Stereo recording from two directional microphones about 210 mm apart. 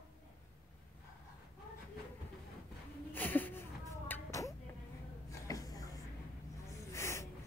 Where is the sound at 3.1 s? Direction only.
10° left (ahead or behind).